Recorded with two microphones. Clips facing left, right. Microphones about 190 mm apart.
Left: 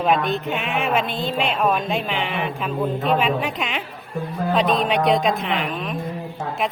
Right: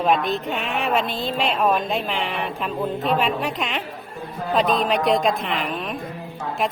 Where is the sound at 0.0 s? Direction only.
Centre (ahead or behind).